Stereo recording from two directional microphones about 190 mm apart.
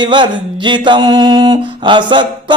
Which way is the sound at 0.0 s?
25° right (ahead or behind).